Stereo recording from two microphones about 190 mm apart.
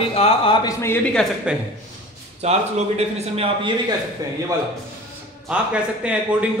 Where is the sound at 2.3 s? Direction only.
35° right (ahead or behind).